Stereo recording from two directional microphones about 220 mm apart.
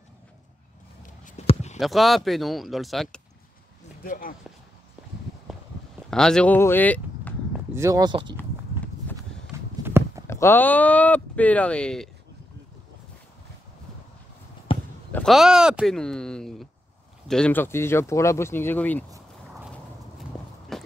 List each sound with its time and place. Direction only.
1.2 s a sound: 30° left (ahead or behind)
1.8 s speech: centre (ahead or behind)
4.0 s speech: 40° left (ahead or behind)
5.5 s a sound: centre (ahead or behind)
6.0 s speech: 5° left (ahead or behind)
7.5 s speech: 10° right (ahead or behind)
9.5 s walk: 10° right (ahead or behind)
10.2 s speech: 10° left (ahead or behind)
14.7 s basketball bounce: 25° left (ahead or behind)
15.1 s speech: centre (ahead or behind)
20.7 s a sound: centre (ahead or behind)